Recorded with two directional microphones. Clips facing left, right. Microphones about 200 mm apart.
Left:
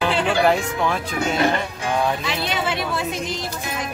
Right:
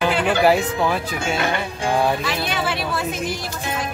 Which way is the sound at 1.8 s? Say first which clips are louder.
Right 4 dB; 30° right (ahead or behind).